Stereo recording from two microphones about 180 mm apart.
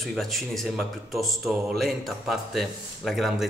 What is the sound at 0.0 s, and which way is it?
Speech, centre (ahead or behind).